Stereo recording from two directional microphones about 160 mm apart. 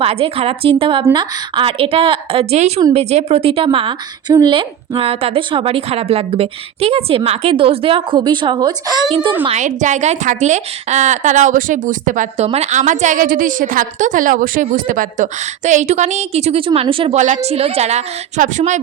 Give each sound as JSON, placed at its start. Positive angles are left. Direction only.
{"t": 0.0, "sound": "a woman's voice", "side_deg": -35}
{"t": 9.4, "sound": "a woman's voice", "side_deg": -45}
{"t": 12.5, "sound": "a woman's voice", "side_deg": -45}
{"t": 17.2, "sound": "a woman's voice", "side_deg": -50}